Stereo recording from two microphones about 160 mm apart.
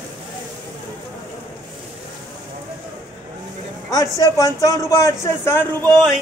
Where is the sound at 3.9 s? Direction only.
25° left (ahead or behind).